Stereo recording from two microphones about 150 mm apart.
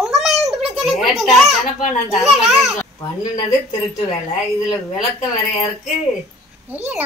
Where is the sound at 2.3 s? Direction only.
Centre (ahead or behind).